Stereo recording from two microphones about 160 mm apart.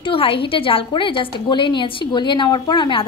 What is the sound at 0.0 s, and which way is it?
A woman's voice, 35° left (ahead or behind).